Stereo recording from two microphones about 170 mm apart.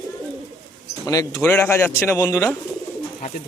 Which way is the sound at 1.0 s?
20° left (ahead or behind).